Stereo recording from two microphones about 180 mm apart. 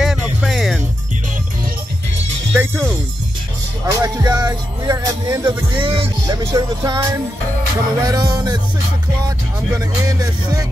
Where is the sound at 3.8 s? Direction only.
20° right (ahead or behind).